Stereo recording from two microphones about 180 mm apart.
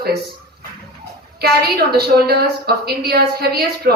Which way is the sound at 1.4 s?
60° right (ahead or behind).